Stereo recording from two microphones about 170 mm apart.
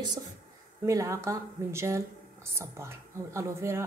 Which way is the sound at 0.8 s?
20° right (ahead or behind).